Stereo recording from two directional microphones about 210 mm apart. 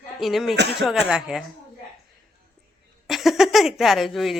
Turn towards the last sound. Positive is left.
turn(degrees=0)  # may be behind; listen again after turning